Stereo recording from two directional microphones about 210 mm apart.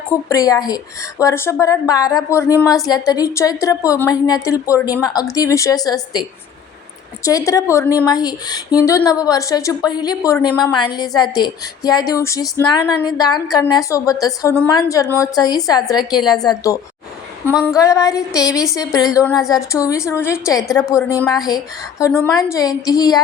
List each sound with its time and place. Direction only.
0.3 s speech: 15° left (ahead or behind)
7.3 s a woman's voice: 15° left (ahead or behind)
17.5 s female singing: centre (ahead or behind)
17.7 s speech: 15° left (ahead or behind)
19.4 s female singing: centre (ahead or behind)
19.7 s speech: 15° left (ahead or behind)